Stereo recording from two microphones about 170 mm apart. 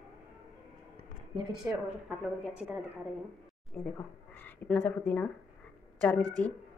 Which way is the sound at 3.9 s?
10° left (ahead or behind).